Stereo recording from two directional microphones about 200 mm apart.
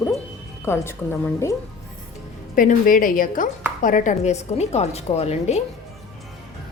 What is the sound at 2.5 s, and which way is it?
A woman's voice, 40° left (ahead or behind).